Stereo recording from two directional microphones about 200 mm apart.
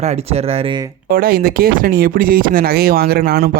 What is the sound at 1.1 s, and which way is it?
Speech, 50° right (ahead or behind).